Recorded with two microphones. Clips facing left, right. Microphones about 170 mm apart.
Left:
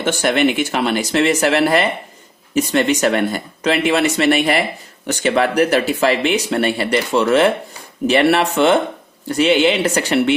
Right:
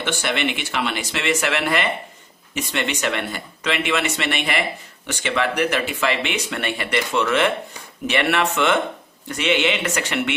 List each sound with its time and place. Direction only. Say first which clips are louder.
0.0 s speech: left 8 dB; 45° left (ahead or behind)